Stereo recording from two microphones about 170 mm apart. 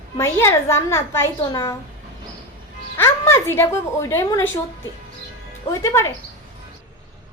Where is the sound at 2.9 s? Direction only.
15° left (ahead or behind).